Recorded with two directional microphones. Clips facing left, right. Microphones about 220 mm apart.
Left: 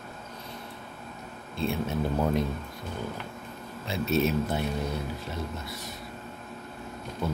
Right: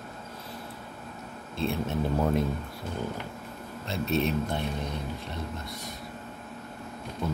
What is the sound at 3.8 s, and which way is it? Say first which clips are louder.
A man's voice: left 2 dB; centre (ahead or behind).